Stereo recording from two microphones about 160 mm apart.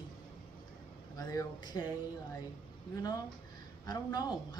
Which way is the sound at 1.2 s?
25° left (ahead or behind).